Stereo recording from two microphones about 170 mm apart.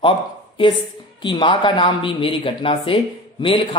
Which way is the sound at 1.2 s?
30° left (ahead or behind).